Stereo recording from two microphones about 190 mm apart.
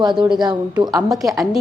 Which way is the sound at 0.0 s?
25° right (ahead or behind).